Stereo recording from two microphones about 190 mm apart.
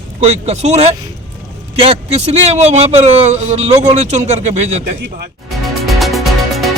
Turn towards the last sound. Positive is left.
turn(degrees=0)  # may be behind; listen again after turning